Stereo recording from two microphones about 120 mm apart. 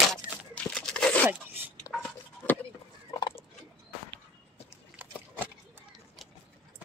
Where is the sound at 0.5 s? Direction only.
10° left (ahead or behind).